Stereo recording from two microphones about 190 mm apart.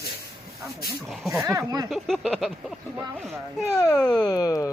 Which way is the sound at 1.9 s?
5° left (ahead or behind).